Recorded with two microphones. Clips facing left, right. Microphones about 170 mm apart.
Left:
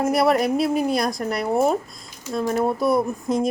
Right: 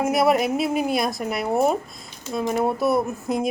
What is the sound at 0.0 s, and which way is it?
Speech, centre (ahead or behind).